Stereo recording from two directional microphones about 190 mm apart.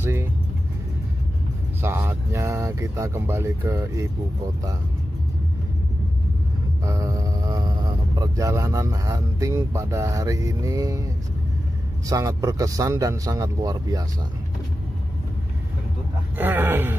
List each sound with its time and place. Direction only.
0.0 s vehicle: 10° right (ahead or behind)
1.8 s speech: 10° right (ahead or behind)
6.8 s speech: 15° right (ahead or behind)
12.1 s speech: 15° right (ahead or behind)
16.3 s speech: 10° right (ahead or behind)